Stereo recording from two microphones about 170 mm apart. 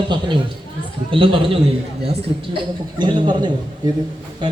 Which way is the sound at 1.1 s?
30° right (ahead or behind).